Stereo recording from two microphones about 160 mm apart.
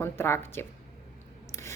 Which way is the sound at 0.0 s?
15° left (ahead or behind).